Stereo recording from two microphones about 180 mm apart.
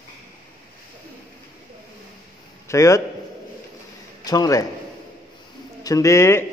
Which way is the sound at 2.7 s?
15° left (ahead or behind).